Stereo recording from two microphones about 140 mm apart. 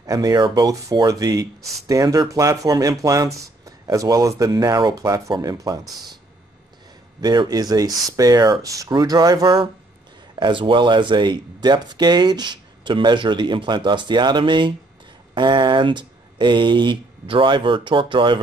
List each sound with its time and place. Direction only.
0.0 s speech: 25° right (ahead or behind)
7.2 s speech: 30° right (ahead or behind)